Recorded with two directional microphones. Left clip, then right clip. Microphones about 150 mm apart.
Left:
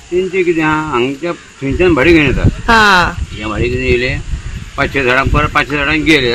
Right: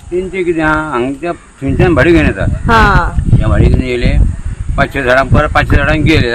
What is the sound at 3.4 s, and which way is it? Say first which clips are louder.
Speech: right 1 dB; 30° right (ahead or behind).